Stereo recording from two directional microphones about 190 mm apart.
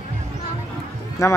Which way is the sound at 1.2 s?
15° left (ahead or behind).